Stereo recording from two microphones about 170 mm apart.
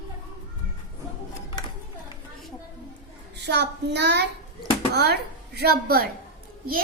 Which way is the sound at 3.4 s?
90° right.